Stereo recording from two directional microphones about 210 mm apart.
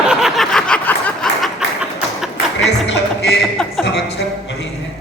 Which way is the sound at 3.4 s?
Centre (ahead or behind).